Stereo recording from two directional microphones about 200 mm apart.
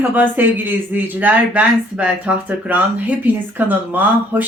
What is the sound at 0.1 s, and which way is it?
Speech, 10° right (ahead or behind).